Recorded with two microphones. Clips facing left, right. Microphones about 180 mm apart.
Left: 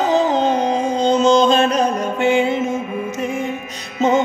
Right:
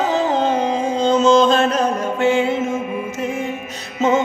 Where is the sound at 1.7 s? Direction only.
15° left (ahead or behind).